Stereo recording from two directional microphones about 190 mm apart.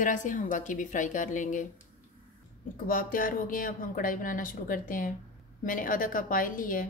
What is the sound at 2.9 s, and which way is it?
Speech, 45° left (ahead or behind).